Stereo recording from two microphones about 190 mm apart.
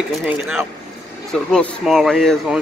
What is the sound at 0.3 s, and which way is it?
Speech, 10° right (ahead or behind).